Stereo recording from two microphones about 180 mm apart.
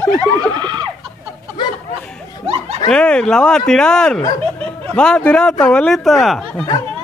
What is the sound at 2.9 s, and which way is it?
A man's voice, 5° left (ahead or behind).